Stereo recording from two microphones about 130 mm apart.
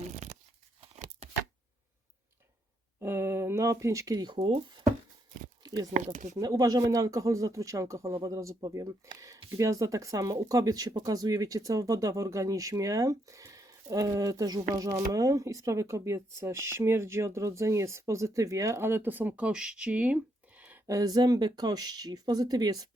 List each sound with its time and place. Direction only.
0.2 s tearing: 65° right (ahead or behind)
3.0 s a sound: 20° right (ahead or behind); by 4.8 s 40° right (ahead or behind)
5.6 s speech: 30° right (ahead or behind)
5.9 s speech: 75° right (ahead or behind)
6.3 s speech: 25° right (ahead or behind); by 20.1 s 10° right (ahead or behind)
20.6 s a sound: 10° right (ahead or behind)
20.8 s speech: 25° right (ahead or behind)